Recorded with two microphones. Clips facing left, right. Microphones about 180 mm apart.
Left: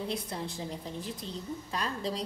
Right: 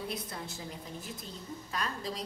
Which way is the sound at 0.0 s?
30° left (ahead or behind).